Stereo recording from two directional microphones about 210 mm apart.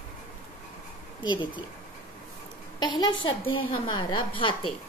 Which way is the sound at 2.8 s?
20° left (ahead or behind).